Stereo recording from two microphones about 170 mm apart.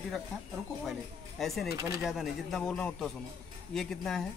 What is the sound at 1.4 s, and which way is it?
A man's voice, centre (ahead or behind).